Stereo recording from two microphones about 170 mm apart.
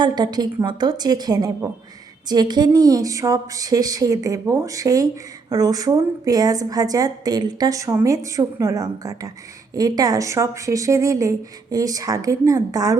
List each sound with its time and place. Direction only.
0.0 s a woman's voice: 25° right (ahead or behind)